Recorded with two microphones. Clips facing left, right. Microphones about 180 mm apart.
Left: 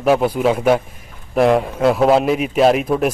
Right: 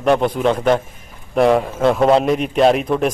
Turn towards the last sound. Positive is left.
turn(degrees=5)  # may be behind; listen again after turning